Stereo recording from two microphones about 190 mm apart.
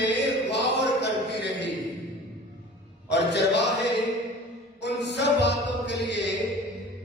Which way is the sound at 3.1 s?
65° left (ahead or behind).